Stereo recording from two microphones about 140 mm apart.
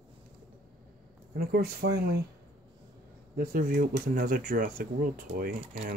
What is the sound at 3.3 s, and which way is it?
Speech, 90° right.